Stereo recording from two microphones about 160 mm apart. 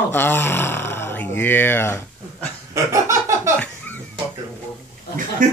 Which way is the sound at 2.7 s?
20° right (ahead or behind).